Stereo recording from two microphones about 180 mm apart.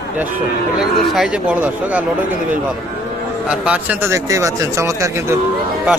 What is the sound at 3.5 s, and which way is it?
A man's voice, 5° right (ahead or behind).